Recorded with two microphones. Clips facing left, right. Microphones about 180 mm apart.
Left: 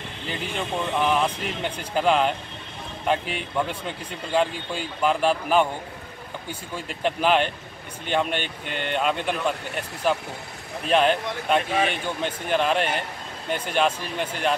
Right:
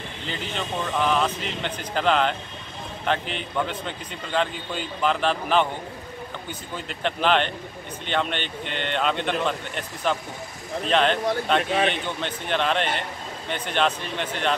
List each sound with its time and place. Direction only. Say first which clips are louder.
0.8 s a man's voice: even; 10° left (ahead or behind)
6.9 s a man's voice: left 1 dB; 5° left (ahead or behind)